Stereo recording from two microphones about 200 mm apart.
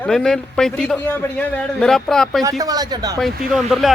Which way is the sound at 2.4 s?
15° right (ahead or behind).